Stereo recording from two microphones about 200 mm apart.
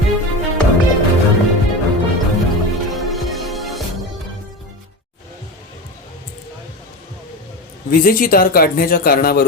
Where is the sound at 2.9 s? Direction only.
Centre (ahead or behind).